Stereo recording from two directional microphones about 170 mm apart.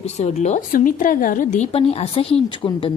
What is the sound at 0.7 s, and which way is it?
Speech, 55° left (ahead or behind).